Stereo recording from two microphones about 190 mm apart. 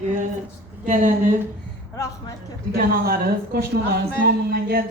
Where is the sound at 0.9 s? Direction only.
40° right (ahead or behind).